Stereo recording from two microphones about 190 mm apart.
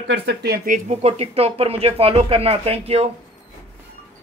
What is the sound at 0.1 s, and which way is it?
Speech, 60° right (ahead or behind).